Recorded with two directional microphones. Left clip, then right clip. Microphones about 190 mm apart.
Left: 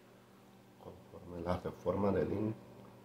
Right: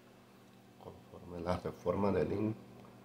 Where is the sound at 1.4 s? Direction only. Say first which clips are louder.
Right 1 dB; 10° right (ahead or behind).